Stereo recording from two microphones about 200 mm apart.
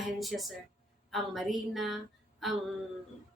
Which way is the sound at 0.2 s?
Centre (ahead or behind).